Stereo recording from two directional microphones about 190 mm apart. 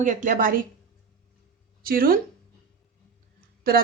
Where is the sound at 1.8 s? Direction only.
50° right (ahead or behind).